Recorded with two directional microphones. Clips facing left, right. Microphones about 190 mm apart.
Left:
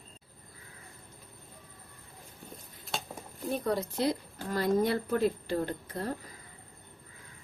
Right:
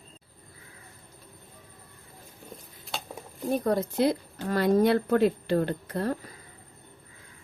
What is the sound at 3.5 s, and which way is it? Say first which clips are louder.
Speech: right 5 dB; 50° right (ahead or behind).